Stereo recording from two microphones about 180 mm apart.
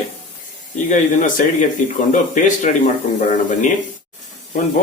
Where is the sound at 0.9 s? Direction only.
45° left (ahead or behind).